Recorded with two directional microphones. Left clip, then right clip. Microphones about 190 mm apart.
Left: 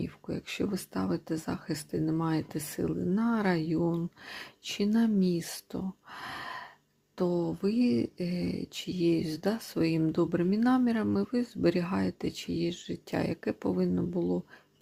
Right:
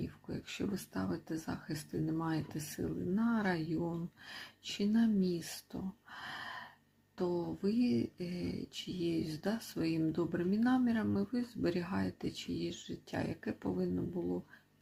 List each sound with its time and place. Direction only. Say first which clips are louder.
0.0 s speech: left 7 dB; 30° left (ahead or behind)